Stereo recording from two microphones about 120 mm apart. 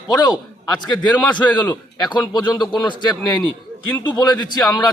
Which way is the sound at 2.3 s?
35° left (ahead or behind).